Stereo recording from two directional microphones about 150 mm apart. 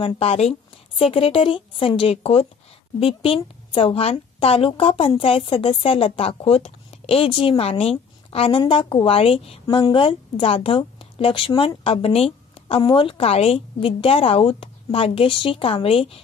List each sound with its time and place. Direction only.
0.0 s a woman's voice: 40° left (ahead or behind)